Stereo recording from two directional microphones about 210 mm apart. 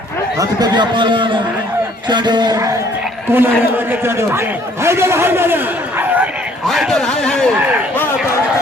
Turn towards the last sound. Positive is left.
turn(degrees=-5)  # may be behind; listen again after turning